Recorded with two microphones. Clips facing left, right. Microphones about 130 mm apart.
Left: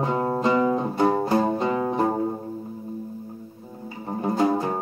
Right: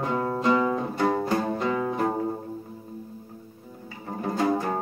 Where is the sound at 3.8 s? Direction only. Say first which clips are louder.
Left 4 dB; 25° left (ahead or behind).